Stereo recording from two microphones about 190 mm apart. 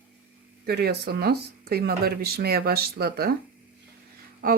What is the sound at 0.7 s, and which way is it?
Speech, 55° right (ahead or behind).